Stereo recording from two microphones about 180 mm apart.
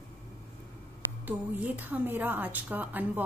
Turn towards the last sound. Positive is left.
turn(degrees=-10)  # may be behind; listen again after turning